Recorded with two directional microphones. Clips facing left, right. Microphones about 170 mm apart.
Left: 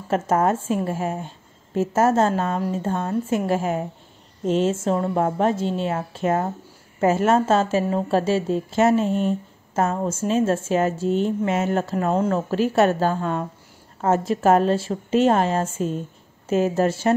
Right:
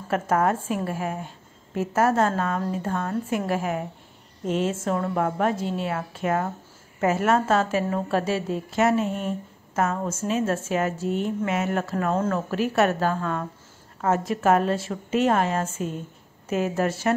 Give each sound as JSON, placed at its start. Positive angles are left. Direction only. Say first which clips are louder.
{"t": 0.1, "sound": "a woman's voice", "louder": "left 2 dB", "side_deg": 25}